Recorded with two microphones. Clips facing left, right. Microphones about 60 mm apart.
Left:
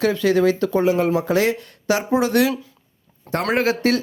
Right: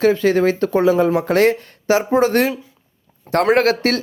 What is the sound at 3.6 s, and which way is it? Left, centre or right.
Speech, right.